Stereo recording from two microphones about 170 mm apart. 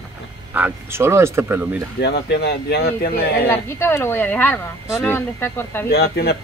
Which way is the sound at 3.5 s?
15° left (ahead or behind).